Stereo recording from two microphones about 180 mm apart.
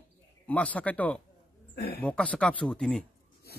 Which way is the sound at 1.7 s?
55° left (ahead or behind).